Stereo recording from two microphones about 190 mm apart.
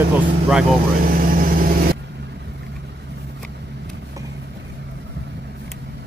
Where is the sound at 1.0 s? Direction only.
50° right (ahead or behind).